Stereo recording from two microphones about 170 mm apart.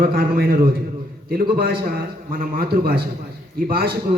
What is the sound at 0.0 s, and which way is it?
A man's voice, 60° right (ahead or behind).